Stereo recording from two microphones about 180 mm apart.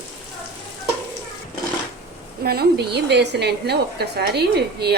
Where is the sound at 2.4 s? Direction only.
60° right (ahead or behind).